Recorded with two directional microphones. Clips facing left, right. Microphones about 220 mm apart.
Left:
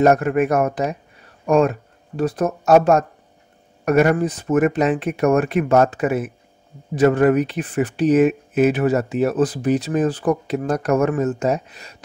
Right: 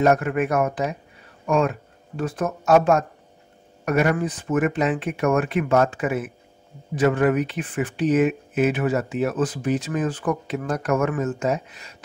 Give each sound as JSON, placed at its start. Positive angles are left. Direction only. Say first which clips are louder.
{"t": 0.0, "sound": "speech", "louder": "left 4 dB", "side_deg": 40}